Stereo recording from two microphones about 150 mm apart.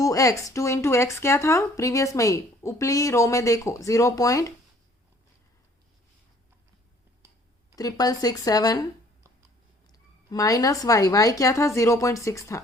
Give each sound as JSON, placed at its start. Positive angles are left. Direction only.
{"t": 0.0, "sound": "speech", "side_deg": 20}
{"t": 7.8, "sound": "speech", "side_deg": 25}
{"t": 10.2, "sound": "speech", "side_deg": 25}